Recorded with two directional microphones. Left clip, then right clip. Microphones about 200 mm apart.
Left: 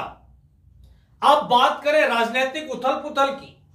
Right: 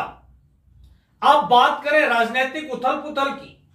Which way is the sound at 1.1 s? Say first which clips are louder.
Right 2 dB; 15° left (ahead or behind).